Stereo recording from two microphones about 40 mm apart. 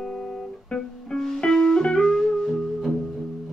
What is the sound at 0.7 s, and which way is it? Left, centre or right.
Music, centre.